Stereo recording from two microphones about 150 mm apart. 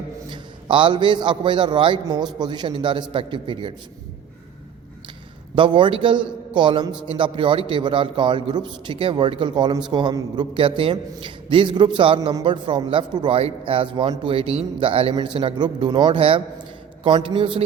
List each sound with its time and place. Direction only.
0.3 s a man's voice: 35° right (ahead or behind)
5.5 s a man's voice: 35° right (ahead or behind)